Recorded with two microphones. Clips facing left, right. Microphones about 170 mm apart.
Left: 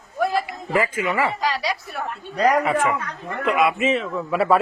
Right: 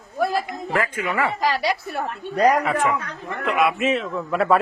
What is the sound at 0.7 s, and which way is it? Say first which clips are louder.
Speech: left 2 dB; 5° left (ahead or behind).